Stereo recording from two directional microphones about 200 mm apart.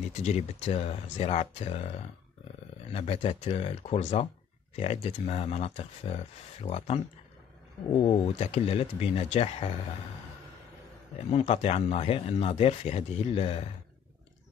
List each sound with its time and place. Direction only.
0.1 s speech: 35° left (ahead or behind)
8.4 s speech: 30° left (ahead or behind)
11.2 s speech: 30° left (ahead or behind)